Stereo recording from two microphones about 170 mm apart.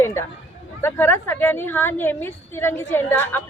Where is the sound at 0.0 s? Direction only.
15° left (ahead or behind).